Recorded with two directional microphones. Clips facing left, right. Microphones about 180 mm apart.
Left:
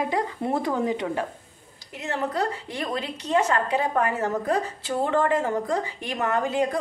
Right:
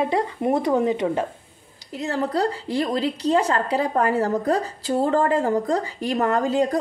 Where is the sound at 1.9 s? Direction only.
35° right (ahead or behind).